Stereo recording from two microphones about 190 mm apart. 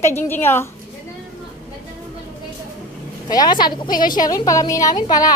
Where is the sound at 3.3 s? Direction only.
20° left (ahead or behind).